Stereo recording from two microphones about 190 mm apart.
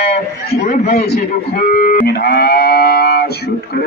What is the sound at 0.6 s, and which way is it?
Speech, 55° left (ahead or behind).